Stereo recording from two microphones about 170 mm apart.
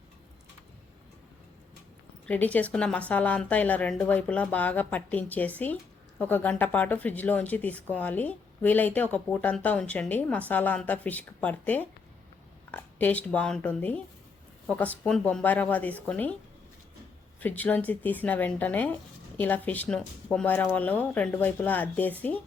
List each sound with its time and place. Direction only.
2.2 s speech: 10° left (ahead or behind)
15.0 s speech: 5° left (ahead or behind)
17.4 s speech: 10° left (ahead or behind)